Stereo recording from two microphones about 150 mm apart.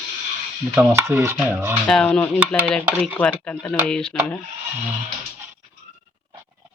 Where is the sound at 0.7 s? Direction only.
15° right (ahead or behind).